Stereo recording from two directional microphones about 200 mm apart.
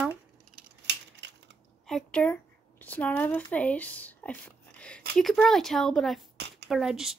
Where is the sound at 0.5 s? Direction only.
60° right (ahead or behind).